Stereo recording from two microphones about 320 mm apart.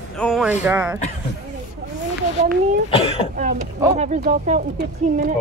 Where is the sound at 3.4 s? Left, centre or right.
Right.